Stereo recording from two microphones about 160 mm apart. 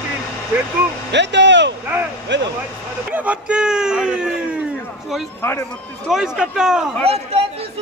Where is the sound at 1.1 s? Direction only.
90° right.